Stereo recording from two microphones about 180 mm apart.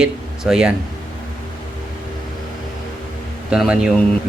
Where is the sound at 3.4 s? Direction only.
5° right (ahead or behind).